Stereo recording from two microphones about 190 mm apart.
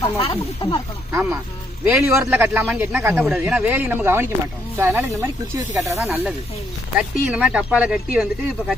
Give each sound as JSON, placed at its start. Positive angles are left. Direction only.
{"t": 0.2, "sound": "speech", "side_deg": 25}
{"t": 1.1, "sound": "speech", "side_deg": -10}
{"t": 6.0, "sound": "speech", "side_deg": 0}